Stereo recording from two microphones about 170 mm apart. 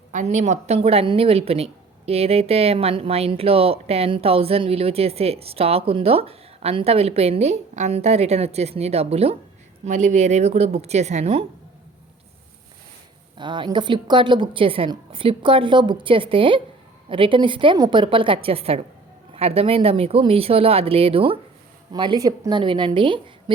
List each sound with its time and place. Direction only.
0.1 s speech: 45° right (ahead or behind)
13.3 s a woman's voice: 25° right (ahead or behind)